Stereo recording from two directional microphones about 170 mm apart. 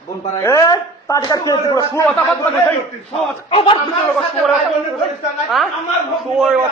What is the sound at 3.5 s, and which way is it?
Speech, 35° left (ahead or behind).